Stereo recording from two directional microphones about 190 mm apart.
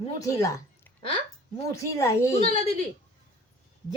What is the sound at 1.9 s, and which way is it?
Speech, 15° left (ahead or behind).